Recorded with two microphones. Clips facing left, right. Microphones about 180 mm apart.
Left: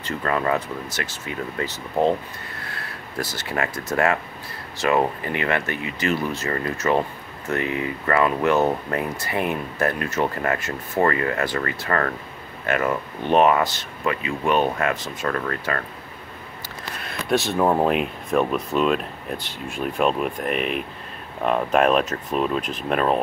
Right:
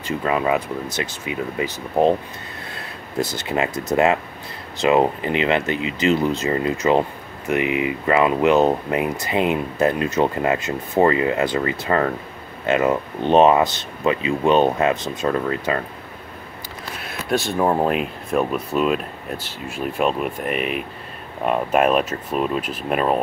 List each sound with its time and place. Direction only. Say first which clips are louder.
0.0 s speech: right 3 dB; 10° right (ahead or behind)
17.0 s speech: even; centre (ahead or behind)